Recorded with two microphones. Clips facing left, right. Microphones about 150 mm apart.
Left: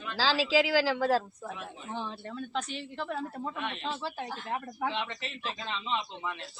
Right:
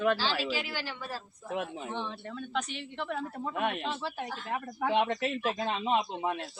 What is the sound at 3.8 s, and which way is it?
Speech, centre (ahead or behind).